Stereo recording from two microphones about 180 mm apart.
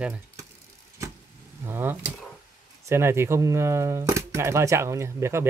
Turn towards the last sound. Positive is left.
turn(degrees=-15)  # may be behind; listen again after turning